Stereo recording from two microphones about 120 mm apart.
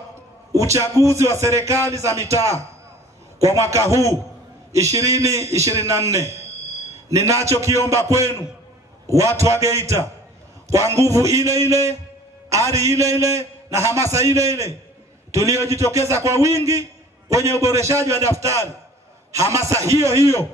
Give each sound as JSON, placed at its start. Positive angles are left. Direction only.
{"t": 0.5, "sound": "a man's voice", "side_deg": -25}